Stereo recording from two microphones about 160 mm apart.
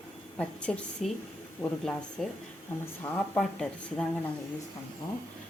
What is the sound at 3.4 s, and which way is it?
Speech, 5° left (ahead or behind).